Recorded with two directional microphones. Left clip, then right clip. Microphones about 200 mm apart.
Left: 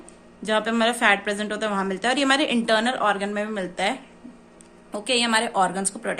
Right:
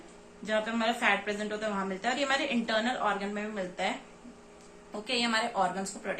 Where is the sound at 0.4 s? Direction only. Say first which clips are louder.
Left 8 dB; 55° left (ahead or behind).